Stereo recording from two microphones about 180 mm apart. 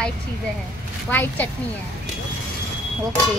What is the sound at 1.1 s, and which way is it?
Speech, 10° left (ahead or behind).